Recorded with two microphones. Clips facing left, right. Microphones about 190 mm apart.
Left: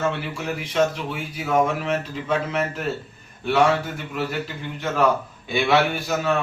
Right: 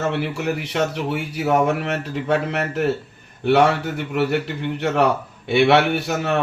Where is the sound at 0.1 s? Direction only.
65° right (ahead or behind).